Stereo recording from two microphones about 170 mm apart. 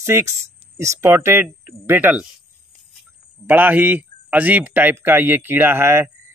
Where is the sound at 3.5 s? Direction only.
10° right (ahead or behind).